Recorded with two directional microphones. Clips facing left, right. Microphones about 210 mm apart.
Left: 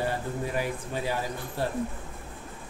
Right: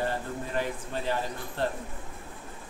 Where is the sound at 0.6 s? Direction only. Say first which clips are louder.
Left 1 dB; 10° left (ahead or behind).